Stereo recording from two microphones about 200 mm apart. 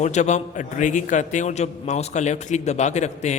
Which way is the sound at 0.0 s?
35° left (ahead or behind).